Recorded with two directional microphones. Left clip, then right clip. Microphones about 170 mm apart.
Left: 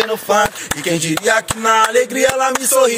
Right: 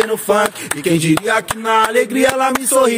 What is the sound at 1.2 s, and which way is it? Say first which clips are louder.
Chopping: left 2 dB; 40° right (ahead or behind).